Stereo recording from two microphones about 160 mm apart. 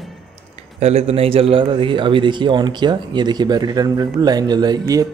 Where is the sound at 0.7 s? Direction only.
45° right (ahead or behind).